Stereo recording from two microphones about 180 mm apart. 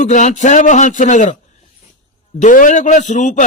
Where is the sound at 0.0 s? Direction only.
40° left (ahead or behind).